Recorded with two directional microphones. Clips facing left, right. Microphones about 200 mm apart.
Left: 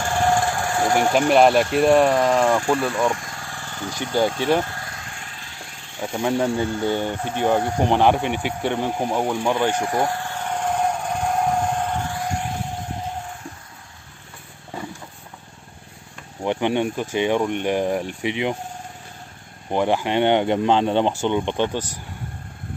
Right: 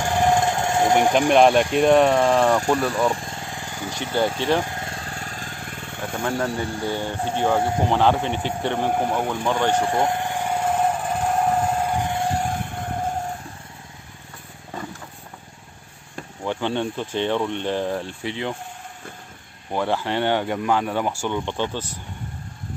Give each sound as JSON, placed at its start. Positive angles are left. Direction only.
{"t": 0.0, "sound": "engine", "side_deg": -15}
{"t": 1.3, "sound": "speech", "side_deg": 0}
{"t": 3.1, "sound": "vehicle", "side_deg": -30}
{"t": 6.1, "sound": "speech", "side_deg": 15}
{"t": 9.8, "sound": "vehicle", "side_deg": -20}
{"t": 12.5, "sound": "vehicle", "side_deg": -55}
{"t": 14.7, "sound": "mechanisms", "side_deg": 10}
{"t": 16.4, "sound": "speech", "side_deg": 15}
{"t": 19.7, "sound": "speech", "side_deg": 15}